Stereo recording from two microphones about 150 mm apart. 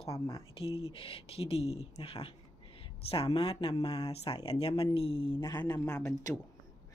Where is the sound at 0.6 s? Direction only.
40° left (ahead or behind).